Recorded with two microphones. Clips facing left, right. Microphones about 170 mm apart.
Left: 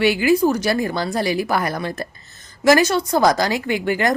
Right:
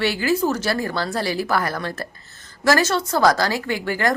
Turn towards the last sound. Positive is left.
turn(degrees=20)  # may be behind; listen again after turning